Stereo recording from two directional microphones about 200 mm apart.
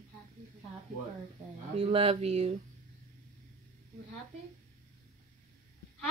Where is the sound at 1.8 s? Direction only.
30° right (ahead or behind).